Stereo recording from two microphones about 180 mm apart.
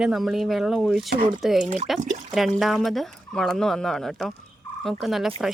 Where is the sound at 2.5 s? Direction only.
Centre (ahead or behind).